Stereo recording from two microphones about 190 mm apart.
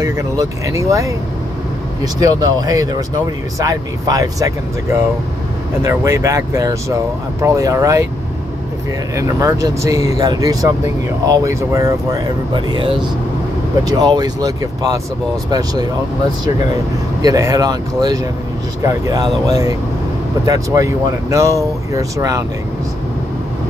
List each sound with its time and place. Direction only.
0.0 s speech: 20° right (ahead or behind)
2.1 s speech: 20° right (ahead or behind)
5.9 s speech: 15° right (ahead or behind)
9.1 s speech: 15° right (ahead or behind)
17.2 s speech: 20° right (ahead or behind)